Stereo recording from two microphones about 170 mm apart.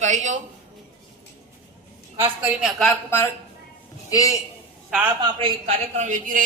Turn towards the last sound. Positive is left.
turn(degrees=-50)  # may be behind; listen again after turning